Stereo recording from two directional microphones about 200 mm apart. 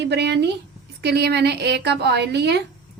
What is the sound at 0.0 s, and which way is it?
A woman's voice, 60° right (ahead or behind).